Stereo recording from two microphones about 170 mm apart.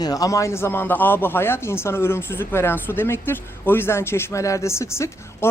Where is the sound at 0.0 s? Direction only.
20° left (ahead or behind).